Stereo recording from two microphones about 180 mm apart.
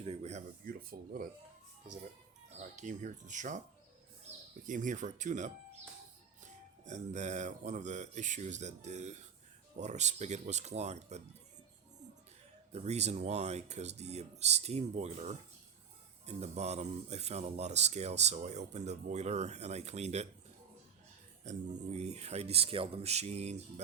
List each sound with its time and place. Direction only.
0.0 s a sound: 35° right (ahead or behind)
0.6 s speech: 55° right (ahead or behind)
2.6 s speech: 40° right (ahead or behind)
4.6 s speech: 45° right (ahead or behind)
6.8 s speech: 40° right (ahead or behind)
12.7 s speech: 35° right (ahead or behind)
21.5 s speech: 40° right (ahead or behind)